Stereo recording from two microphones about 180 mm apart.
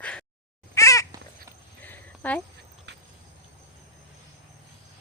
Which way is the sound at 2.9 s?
75° right (ahead or behind).